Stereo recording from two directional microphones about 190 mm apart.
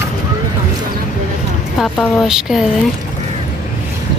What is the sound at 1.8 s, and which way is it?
Speech, centre (ahead or behind).